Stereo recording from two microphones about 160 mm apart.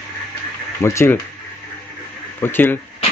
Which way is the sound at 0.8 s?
15° left (ahead or behind).